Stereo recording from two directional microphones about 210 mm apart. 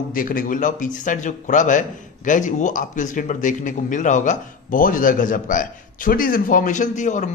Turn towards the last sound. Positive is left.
turn(degrees=35)  # may be behind; listen again after turning